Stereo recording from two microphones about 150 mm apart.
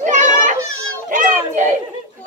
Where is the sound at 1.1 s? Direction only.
55° right (ahead or behind).